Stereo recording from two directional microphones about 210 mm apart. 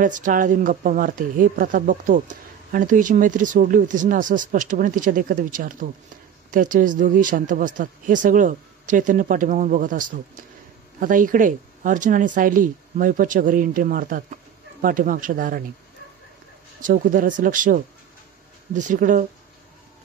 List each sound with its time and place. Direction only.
0.0 s a woman's voice: 40° right (ahead or behind)
16.8 s a woman's voice: 40° right (ahead or behind)